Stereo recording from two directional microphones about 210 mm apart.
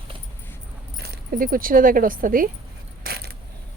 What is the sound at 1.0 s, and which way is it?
Speech, 45° right (ahead or behind).